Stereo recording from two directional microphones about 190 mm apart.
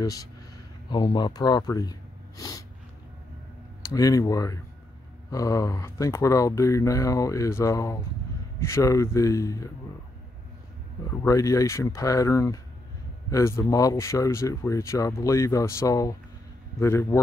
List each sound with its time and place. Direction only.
0.0 s speech: 20° left (ahead or behind)
3.9 s speech: 15° left (ahead or behind)
11.1 s speech: 15° left (ahead or behind)